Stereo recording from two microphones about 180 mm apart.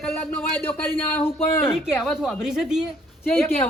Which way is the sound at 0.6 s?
10° left (ahead or behind).